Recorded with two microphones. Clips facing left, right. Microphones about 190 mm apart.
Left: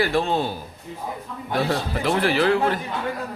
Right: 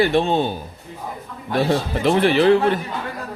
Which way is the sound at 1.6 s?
20° right (ahead or behind).